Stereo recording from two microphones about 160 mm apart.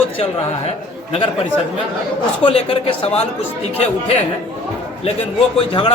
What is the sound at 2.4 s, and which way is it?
Speech, 35° left (ahead or behind).